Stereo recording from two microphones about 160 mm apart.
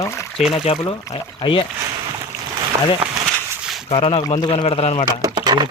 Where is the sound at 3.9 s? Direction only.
35° left (ahead or behind).